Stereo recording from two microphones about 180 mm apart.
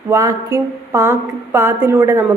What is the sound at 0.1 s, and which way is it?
A woman's voice, 15° right (ahead or behind).